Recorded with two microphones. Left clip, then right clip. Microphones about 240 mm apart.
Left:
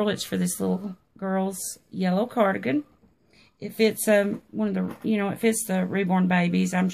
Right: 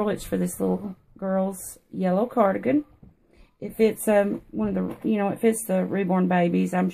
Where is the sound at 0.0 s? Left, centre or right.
Left.